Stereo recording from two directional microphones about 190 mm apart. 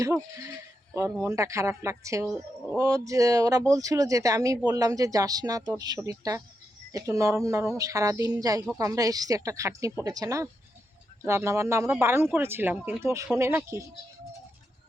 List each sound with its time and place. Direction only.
0.0 s speech: 15° right (ahead or behind)
2.2 s speech: 5° right (ahead or behind)
2.7 s speech: 15° right (ahead or behind)